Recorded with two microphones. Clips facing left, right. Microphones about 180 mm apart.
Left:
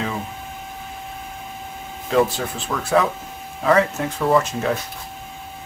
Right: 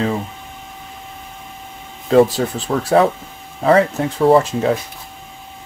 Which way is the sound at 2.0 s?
35° right (ahead or behind).